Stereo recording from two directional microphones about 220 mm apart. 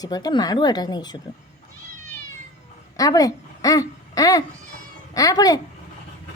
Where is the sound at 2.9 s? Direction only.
15° left (ahead or behind).